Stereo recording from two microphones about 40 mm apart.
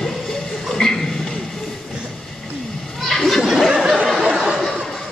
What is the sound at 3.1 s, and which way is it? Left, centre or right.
Children playing, centre.